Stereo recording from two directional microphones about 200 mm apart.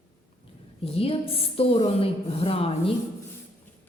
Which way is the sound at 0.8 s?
30° left (ahead or behind).